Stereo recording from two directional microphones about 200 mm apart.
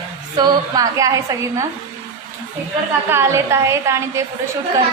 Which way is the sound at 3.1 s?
15° right (ahead or behind).